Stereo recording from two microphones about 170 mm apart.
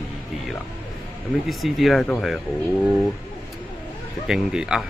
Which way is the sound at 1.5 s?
Centre (ahead or behind).